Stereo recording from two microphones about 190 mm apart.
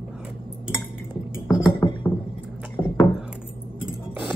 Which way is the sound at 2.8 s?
15° left (ahead or behind).